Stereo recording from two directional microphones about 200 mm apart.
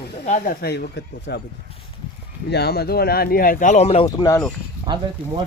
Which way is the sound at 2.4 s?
55° left (ahead or behind).